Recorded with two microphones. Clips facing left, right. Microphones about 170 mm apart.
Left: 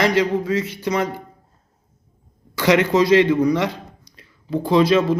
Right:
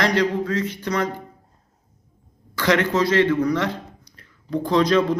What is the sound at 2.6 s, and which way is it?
Speech, 10° left (ahead or behind).